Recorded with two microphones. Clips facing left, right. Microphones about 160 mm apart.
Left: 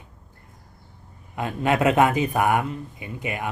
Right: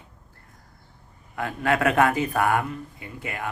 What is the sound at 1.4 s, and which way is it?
Speech, 20° left (ahead or behind).